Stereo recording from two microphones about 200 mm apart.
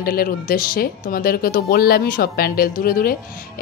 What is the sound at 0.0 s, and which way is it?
Speech, 45° left (ahead or behind).